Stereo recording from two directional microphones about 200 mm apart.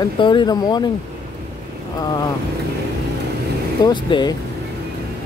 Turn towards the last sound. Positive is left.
turn(degrees=20)  # may be behind; listen again after turning